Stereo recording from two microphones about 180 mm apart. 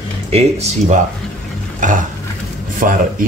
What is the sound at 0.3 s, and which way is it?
Speech, 35° right (ahead or behind).